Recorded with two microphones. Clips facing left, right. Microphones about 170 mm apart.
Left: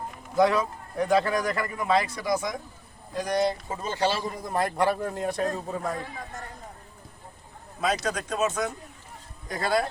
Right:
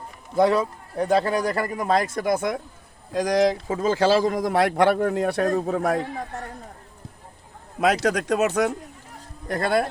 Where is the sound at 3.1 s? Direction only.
90° right.